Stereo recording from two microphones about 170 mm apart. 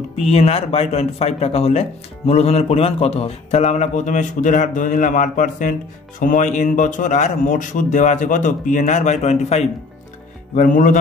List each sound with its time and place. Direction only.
0.1 s a man's voice: 35° left (ahead or behind)